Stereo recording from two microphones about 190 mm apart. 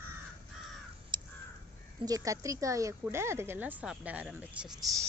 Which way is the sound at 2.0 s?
20° right (ahead or behind).